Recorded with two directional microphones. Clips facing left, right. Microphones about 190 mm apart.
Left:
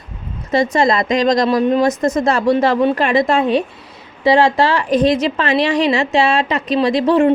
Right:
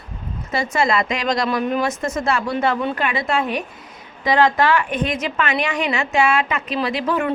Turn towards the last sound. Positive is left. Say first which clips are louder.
# left 8 dB
turn(degrees=30)  # may be behind; listen again after turning